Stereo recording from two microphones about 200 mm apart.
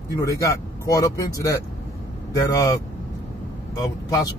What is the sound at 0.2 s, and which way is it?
Speech, 15° left (ahead or behind).